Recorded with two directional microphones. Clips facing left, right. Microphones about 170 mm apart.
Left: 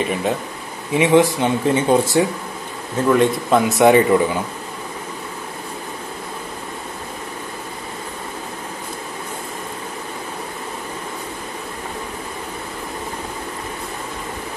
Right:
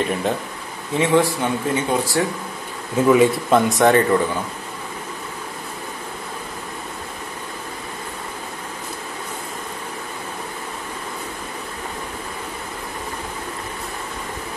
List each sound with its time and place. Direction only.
0.0 s a man's voice: centre (ahead or behind)
0.9 s speech: 20° left (ahead or behind)
3.0 s a man's voice: 5° right (ahead or behind); by 4.2 s 10° left (ahead or behind)